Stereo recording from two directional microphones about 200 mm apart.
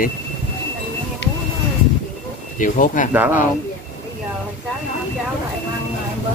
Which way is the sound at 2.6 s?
40° left (ahead or behind).